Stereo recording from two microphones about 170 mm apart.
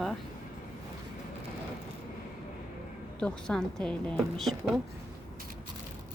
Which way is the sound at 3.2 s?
5° left (ahead or behind).